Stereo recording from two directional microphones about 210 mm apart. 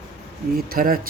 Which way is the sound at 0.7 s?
45° right (ahead or behind).